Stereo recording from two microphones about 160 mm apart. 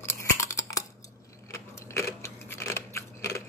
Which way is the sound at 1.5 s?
20° left (ahead or behind).